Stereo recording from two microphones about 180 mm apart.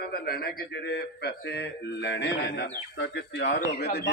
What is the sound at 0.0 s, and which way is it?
Speech, 60° left (ahead or behind).